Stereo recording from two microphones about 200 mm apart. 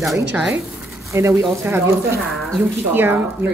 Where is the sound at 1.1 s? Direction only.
15° right (ahead or behind).